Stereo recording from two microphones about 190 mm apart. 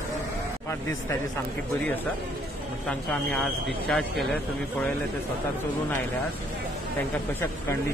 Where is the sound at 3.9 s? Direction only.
5° left (ahead or behind).